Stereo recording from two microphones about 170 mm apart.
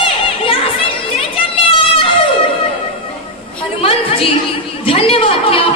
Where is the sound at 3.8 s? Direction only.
35° left (ahead or behind).